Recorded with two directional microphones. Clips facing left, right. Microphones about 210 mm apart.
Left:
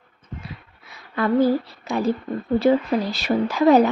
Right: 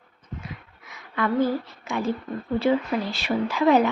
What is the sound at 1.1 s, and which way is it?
A woman's voice, 35° left (ahead or behind).